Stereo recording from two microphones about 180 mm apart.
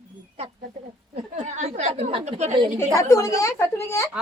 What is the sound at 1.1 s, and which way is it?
A woman's voice, 40° right (ahead or behind).